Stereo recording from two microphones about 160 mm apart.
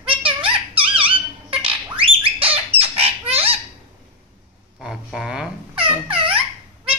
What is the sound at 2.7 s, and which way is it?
Squawk, 35° right (ahead or behind).